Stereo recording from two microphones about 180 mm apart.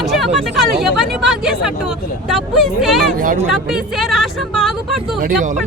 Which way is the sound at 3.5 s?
5° right (ahead or behind).